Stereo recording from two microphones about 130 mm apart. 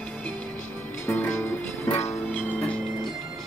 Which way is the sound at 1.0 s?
15° left (ahead or behind).